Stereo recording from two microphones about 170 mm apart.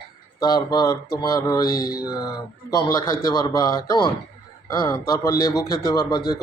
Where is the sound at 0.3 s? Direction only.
25° left (ahead or behind).